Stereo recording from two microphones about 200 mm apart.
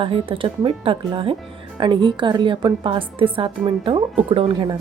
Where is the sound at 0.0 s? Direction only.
25° right (ahead or behind).